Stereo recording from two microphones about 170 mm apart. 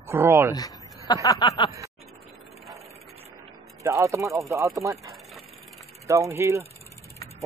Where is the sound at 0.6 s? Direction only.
20° left (ahead or behind).